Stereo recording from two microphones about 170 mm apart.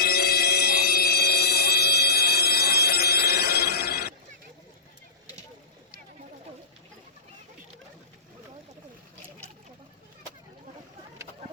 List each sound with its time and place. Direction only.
0.0 s music: 65° left (ahead or behind)